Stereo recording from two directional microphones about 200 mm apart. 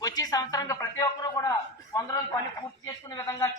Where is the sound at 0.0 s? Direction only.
20° left (ahead or behind).